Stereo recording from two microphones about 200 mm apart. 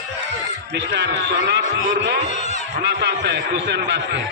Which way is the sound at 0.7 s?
60° right (ahead or behind).